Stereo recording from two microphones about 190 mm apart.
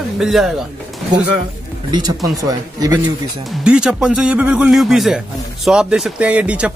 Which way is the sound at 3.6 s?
5° right (ahead or behind).